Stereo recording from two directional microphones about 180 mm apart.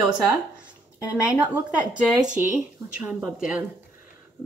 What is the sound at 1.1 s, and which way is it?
A woman's voice, 5° right (ahead or behind).